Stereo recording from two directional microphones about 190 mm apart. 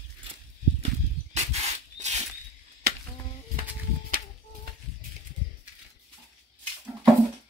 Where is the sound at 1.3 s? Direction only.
35° right (ahead or behind).